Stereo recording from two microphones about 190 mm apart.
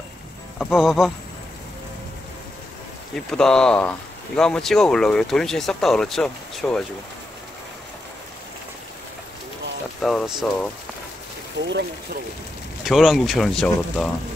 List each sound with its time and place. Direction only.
0.6 s speech: centre (ahead or behind)
3.2 s speech: 5° left (ahead or behind)
10.0 s speech: centre (ahead or behind)
11.6 s speech: 65° right (ahead or behind)
12.8 s speech: centre (ahead or behind)